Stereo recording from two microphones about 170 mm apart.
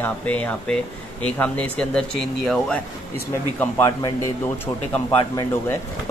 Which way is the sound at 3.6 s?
20° left (ahead or behind).